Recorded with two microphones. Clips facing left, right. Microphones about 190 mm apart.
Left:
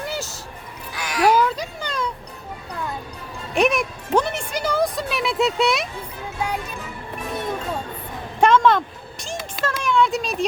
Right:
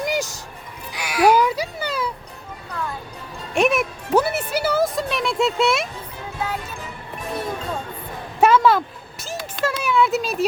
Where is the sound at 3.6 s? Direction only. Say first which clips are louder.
Right 1 dB; centre (ahead or behind).